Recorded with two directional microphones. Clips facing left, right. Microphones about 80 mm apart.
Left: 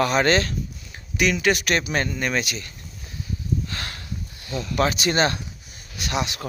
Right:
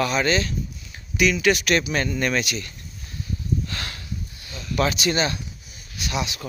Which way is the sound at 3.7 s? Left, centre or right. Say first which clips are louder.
Even; left.